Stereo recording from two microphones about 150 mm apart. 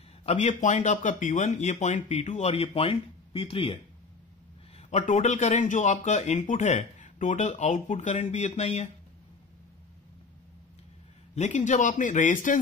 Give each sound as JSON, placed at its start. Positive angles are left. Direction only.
{"t": 0.2, "sound": "speech", "side_deg": 45}
{"t": 4.7, "sound": "speech", "side_deg": 55}
{"t": 11.3, "sound": "speech", "side_deg": 50}